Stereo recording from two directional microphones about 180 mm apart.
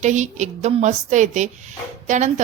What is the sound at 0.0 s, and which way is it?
A woman's voice, 40° right (ahead or behind).